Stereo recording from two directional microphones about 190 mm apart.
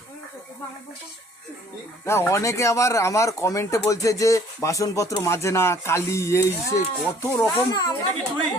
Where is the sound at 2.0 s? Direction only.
15° left (ahead or behind).